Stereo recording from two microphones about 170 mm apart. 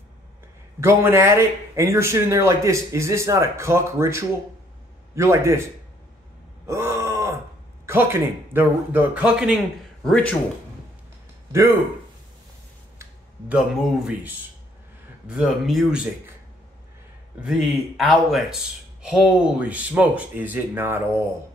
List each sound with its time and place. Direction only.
0.7 s speech: 15° right (ahead or behind)
6.7 s groan: 15° right (ahead or behind)
7.8 s speech: 15° right (ahead or behind); by 10.3 s 5° left (ahead or behind)
13.6 s speech: 5° right (ahead or behind)
17.4 s speech: centre (ahead or behind)